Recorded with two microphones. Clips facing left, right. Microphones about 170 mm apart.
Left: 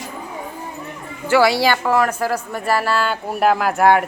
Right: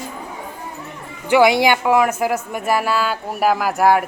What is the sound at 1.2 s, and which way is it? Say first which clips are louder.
A woman's voice: right 2 dB; 15° right (ahead or behind).